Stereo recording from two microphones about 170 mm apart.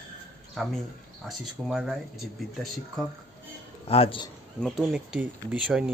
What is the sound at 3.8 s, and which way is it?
Speech, 35° left (ahead or behind).